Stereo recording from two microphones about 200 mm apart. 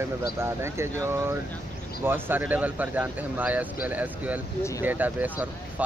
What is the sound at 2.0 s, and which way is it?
Speech, 10° right (ahead or behind).